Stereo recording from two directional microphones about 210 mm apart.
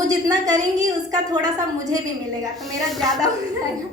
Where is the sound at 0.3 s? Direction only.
20° right (ahead or behind).